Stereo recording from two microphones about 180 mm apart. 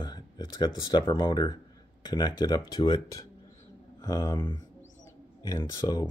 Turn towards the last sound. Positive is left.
turn(degrees=20)  # may be behind; listen again after turning